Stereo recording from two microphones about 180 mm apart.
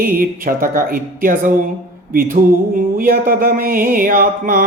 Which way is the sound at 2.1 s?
50° right (ahead or behind).